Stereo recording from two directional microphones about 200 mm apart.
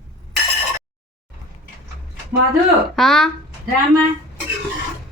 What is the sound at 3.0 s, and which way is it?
Speech, centre (ahead or behind).